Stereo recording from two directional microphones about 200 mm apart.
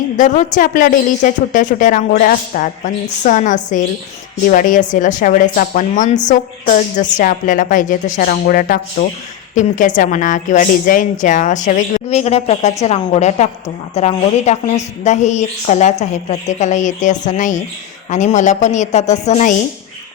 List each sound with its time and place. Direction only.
0.2 s a woman's voice: 40° left (ahead or behind)